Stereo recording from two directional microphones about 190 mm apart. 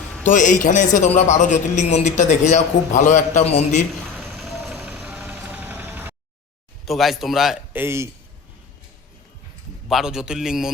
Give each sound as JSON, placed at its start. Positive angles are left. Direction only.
{"t": 0.3, "sound": "a man's voice", "side_deg": 40}
{"t": 4.2, "sound": "vehicle", "side_deg": 0}
{"t": 6.8, "sound": "a man's voice", "side_deg": 0}
{"t": 9.9, "sound": "a man's voice", "side_deg": -5}